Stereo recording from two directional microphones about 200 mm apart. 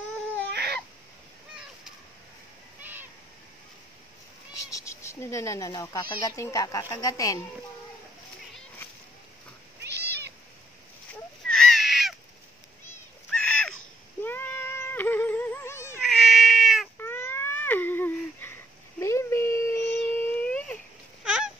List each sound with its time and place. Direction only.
2.8 s owl: 10° right (ahead or behind)
4.6 s speech: 15° left (ahead or behind)
9.8 s cat: 55° right (ahead or behind)
11.4 s crow: 5° left (ahead or behind)
13.3 s a sound: 5° left (ahead or behind)
14.2 s cat: 10° left (ahead or behind)
16.0 s cat: centre (ahead or behind)
17.0 s a sound: 10° left (ahead or behind)
21.2 s fowl: 5° right (ahead or behind)